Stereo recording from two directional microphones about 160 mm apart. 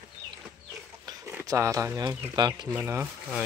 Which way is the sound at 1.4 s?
20° right (ahead or behind).